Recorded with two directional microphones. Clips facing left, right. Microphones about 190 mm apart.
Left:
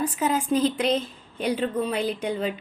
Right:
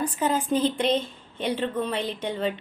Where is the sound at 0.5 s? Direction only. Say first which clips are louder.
Left 1 dB; 30° right (ahead or behind).